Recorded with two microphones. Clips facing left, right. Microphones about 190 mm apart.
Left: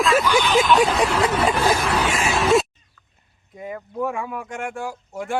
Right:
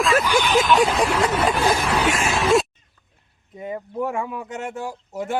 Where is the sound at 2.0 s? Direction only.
Centre (ahead or behind).